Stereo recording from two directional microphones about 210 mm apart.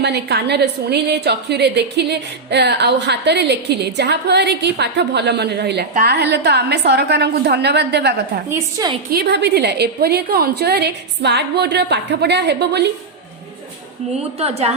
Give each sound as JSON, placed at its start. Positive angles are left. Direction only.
{"t": 0.0, "sound": "a woman's voice", "side_deg": -50}
{"t": 8.4, "sound": "a woman's voice", "side_deg": -10}
{"t": 9.0, "sound": "a woman's voice", "side_deg": -50}
{"t": 14.3, "sound": "a woman's voice", "side_deg": -30}